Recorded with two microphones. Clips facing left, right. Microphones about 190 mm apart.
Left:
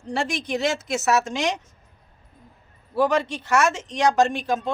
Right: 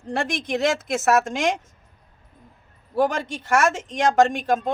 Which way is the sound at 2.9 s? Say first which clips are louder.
Left 1 dB; 45° right (ahead or behind).